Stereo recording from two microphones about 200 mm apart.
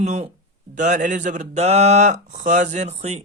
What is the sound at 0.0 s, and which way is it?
Mantra, 35° right (ahead or behind).